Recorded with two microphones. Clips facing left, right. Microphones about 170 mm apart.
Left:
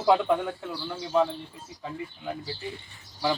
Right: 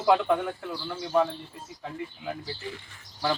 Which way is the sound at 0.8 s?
5° left (ahead or behind).